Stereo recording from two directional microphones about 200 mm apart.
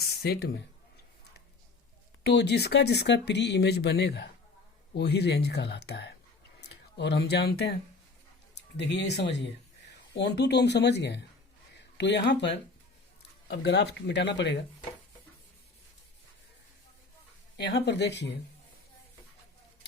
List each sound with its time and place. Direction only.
0.2 s speech: 55° left (ahead or behind)
2.2 s speech: 55° left (ahead or behind)
17.6 s speech: 55° left (ahead or behind)